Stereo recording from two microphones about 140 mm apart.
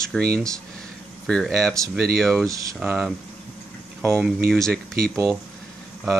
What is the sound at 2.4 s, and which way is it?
Speech, 25° right (ahead or behind).